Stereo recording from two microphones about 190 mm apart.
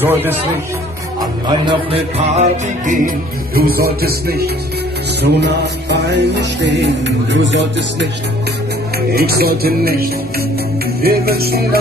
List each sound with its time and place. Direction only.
0.0 s speech: 10° right (ahead or behind)
1.7 s music: 30° right (ahead or behind)
3.5 s music: 50° right (ahead or behind)
9.1 s music: 55° right (ahead or behind)